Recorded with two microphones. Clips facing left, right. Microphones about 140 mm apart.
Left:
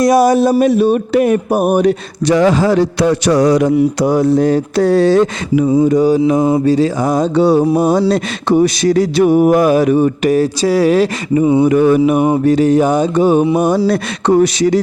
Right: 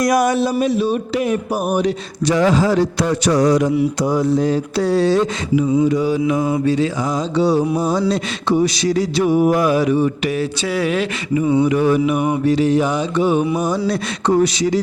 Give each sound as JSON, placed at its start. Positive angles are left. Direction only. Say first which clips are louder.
{"t": 0.0, "sound": "speech", "louder": "left 6 dB", "side_deg": 30}
{"t": 0.3, "sound": "speech", "louder": "left 6 dB", "side_deg": 45}
{"t": 7.1, "sound": "speech", "louder": "left 6 dB", "side_deg": 55}
{"t": 11.6, "sound": "speech", "louder": "left 5 dB", "side_deg": 50}
{"t": 13.6, "sound": "speech", "louder": "left 6 dB", "side_deg": 60}